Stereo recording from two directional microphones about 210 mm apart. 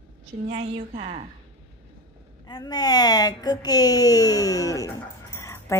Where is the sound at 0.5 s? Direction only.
30° right (ahead or behind).